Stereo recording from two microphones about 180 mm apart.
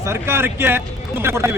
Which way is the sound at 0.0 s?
15° right (ahead or behind).